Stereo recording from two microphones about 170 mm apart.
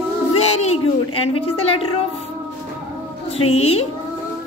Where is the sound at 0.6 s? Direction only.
35° left (ahead or behind).